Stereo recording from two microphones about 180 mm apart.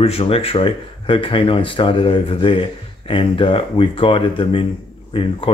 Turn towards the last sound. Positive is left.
turn(degrees=30)  # may be behind; listen again after turning